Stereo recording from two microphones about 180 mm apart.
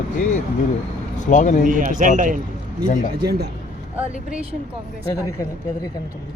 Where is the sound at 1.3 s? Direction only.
45° left (ahead or behind).